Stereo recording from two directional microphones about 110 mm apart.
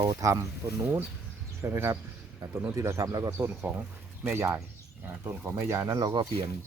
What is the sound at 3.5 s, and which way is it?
Speech, 15° right (ahead or behind).